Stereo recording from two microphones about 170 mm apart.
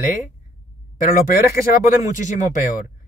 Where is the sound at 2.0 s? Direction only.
45° left (ahead or behind).